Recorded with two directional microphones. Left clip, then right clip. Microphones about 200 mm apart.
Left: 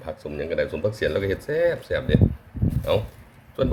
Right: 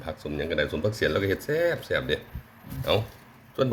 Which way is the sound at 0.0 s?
Centre (ahead or behind).